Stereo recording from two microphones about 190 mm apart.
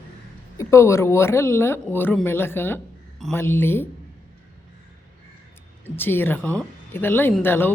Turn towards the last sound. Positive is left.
turn(degrees=10)  # may be behind; listen again after turning